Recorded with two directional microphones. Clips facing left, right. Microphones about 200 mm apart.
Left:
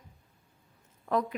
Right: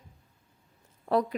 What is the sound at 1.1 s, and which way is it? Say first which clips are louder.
Speech: right 3 dB; 35° right (ahead or behind).